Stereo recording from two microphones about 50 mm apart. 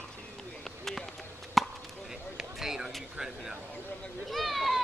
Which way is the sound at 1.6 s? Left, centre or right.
Centre.